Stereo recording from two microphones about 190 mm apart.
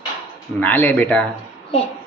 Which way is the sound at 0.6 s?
10° left (ahead or behind).